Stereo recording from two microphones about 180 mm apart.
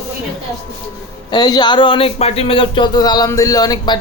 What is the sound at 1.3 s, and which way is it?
Speech, 20° left (ahead or behind).